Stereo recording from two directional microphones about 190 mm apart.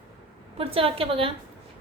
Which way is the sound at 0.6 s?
30° right (ahead or behind).